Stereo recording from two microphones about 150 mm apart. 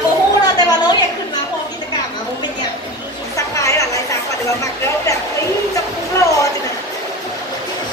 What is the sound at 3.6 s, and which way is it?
Chatter, 20° left (ahead or behind).